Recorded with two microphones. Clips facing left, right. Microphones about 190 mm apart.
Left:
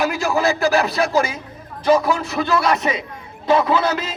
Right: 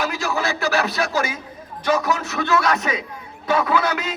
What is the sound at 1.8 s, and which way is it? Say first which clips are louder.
Speech: left 4 dB; 30° left (ahead or behind).